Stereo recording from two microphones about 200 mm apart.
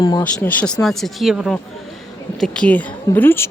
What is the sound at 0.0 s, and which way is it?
Speech, 20° left (ahead or behind).